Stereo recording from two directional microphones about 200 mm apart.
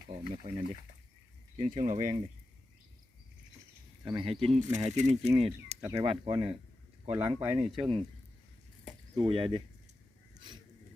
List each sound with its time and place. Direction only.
0.1 s speech: 25° right (ahead or behind)
1.5 s speech: 40° right (ahead or behind)
4.0 s speech: 25° right (ahead or behind)
5.8 s speech: 15° right (ahead or behind)
6.1 s speech: 30° right (ahead or behind)
9.1 s speech: 25° right (ahead or behind)